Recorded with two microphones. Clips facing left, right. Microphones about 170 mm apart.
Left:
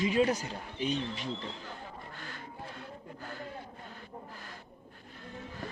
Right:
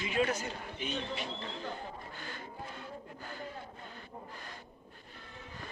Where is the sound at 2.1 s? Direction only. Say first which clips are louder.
Right 1 dB; centre (ahead or behind).